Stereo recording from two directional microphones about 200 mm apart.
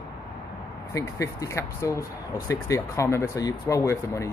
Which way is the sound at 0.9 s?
15° left (ahead or behind).